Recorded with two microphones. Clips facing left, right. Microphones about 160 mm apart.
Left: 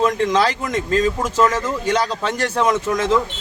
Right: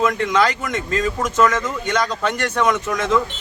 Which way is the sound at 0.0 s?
35° left (ahead or behind).